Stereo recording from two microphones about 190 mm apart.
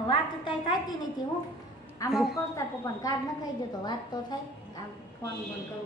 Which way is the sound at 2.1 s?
Centre (ahead or behind).